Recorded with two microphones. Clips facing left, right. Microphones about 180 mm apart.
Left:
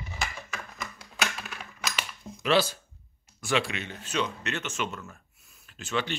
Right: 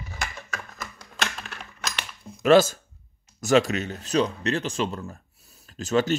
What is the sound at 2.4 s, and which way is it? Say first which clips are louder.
Speech: right 8 dB; 45° right (ahead or behind).